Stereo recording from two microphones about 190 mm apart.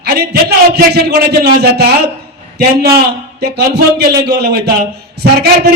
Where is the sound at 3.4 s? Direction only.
60° right (ahead or behind).